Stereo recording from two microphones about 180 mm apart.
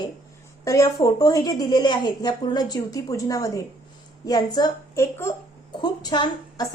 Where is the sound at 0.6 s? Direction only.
20° left (ahead or behind).